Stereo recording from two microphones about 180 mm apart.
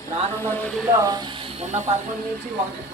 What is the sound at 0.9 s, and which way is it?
Speech, 20° right (ahead or behind).